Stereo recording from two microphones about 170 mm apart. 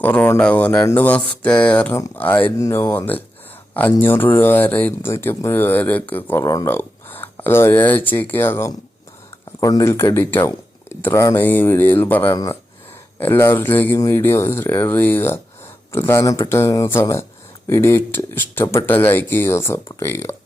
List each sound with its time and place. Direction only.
0.0 s speech: 10° left (ahead or behind)
12.3 s speech: 25° left (ahead or behind)